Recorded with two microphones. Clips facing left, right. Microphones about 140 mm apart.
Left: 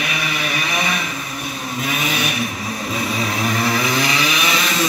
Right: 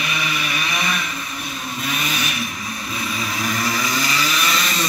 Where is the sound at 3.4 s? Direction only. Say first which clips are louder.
Left 3 dB; 25° left (ahead or behind).